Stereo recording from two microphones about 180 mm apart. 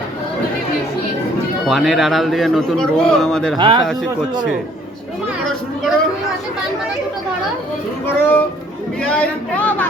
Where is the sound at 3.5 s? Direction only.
25° right (ahead or behind).